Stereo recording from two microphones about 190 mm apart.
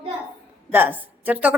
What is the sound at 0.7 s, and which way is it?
Speech, 10° right (ahead or behind).